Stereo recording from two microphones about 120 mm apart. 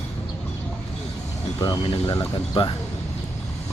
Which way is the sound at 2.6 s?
45° left (ahead or behind).